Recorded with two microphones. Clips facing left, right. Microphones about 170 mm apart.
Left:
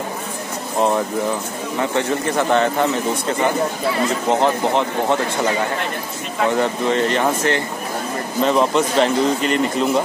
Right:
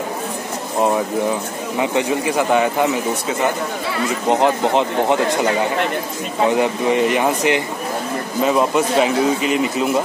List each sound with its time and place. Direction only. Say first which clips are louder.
1.8 s a man's voice: right 2 dB; 15° right (ahead or behind)